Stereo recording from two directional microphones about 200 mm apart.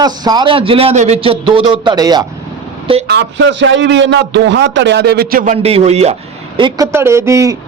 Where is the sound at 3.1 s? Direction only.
60° right (ahead or behind); by 5.6 s 45° right (ahead or behind).